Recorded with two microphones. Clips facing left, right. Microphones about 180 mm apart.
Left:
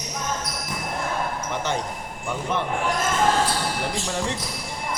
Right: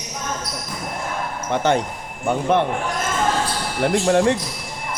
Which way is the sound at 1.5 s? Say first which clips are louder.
Right 7 dB; 60° right (ahead or behind).